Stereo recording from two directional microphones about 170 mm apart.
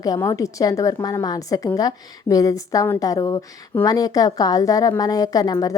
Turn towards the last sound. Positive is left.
turn(degrees=20)  # may be behind; listen again after turning